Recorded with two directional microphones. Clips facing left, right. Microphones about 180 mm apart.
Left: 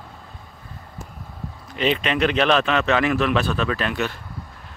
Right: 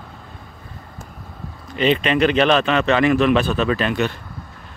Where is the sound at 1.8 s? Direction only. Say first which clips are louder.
Right 4 dB; centre (ahead or behind).